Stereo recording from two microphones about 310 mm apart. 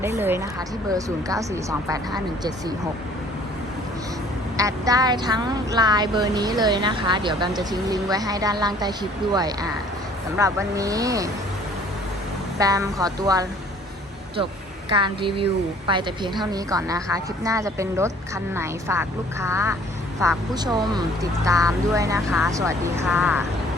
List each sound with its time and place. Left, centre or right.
0.0 s speech: centre
4.5 s speech: centre
12.5 s speech: centre
14.8 s a woman's voice: centre